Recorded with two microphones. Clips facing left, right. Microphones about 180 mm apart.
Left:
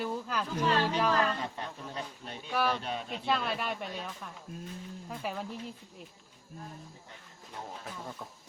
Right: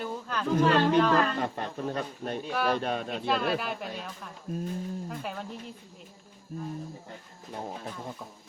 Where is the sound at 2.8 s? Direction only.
55° right (ahead or behind).